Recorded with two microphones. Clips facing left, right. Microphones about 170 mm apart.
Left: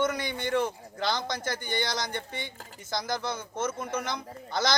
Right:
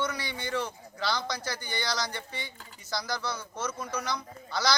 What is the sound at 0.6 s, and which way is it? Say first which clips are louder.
Speech: left 4 dB; 20° left (ahead or behind).